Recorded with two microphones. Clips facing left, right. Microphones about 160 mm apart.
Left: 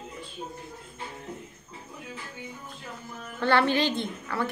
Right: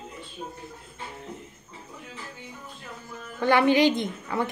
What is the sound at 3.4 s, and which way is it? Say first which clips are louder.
A woman's voice: right 4 dB; 15° right (ahead or behind).